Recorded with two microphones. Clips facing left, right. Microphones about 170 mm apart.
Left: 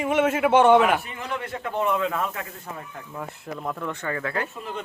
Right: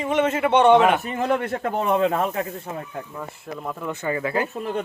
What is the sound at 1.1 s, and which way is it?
Speech, 45° right (ahead or behind).